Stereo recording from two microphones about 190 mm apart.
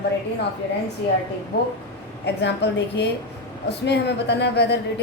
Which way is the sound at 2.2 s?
65° left (ahead or behind).